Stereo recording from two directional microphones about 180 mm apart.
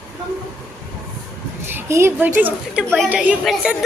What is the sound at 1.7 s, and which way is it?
A woman's voice, 15° right (ahead or behind).